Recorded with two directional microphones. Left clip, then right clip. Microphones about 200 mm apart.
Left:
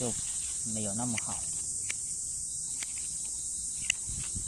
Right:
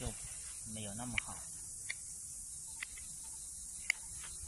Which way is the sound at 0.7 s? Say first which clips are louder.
Left 4 dB; 20° left (ahead or behind).